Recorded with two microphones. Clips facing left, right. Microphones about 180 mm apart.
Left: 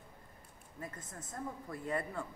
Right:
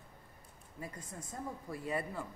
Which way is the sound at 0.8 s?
10° right (ahead or behind).